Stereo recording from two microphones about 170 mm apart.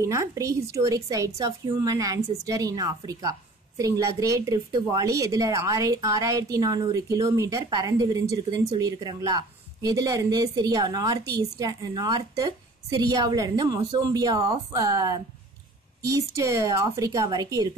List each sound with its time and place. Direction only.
0.0 s a woman's voice: 15° right (ahead or behind)